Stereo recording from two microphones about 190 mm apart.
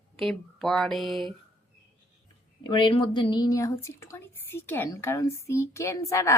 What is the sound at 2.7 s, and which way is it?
A woman's voice, 25° left (ahead or behind).